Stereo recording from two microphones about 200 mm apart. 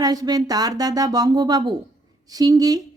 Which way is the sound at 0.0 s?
20° right (ahead or behind).